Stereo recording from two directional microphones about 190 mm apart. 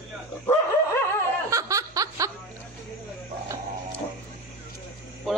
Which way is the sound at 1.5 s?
15° right (ahead or behind).